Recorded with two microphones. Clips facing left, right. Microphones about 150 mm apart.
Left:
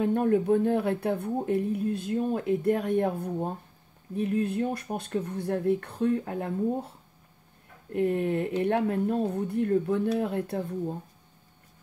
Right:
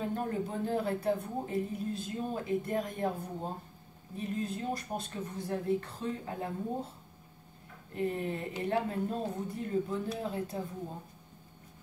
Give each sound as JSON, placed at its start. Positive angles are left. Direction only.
{"t": 0.0, "sound": "speech", "side_deg": 60}
{"t": 7.9, "sound": "speech", "side_deg": 65}